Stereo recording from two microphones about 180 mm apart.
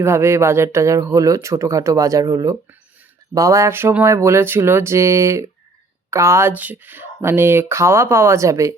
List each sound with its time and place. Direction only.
0.0 s speech: 15° right (ahead or behind)